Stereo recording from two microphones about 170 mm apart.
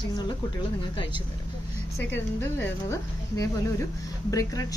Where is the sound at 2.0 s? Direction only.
10° left (ahead or behind).